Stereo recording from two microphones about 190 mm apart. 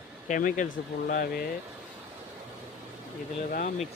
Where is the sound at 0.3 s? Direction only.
45° left (ahead or behind).